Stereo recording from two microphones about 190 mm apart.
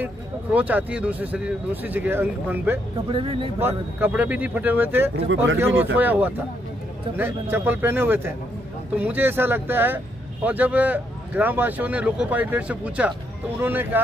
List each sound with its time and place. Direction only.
0.0 s speech: 10° right (ahead or behind)
3.1 s speech: 25° right (ahead or behind)
3.5 s speech: 10° right (ahead or behind)
5.1 s speech: 85° right
5.9 s speech: 10° right (ahead or behind)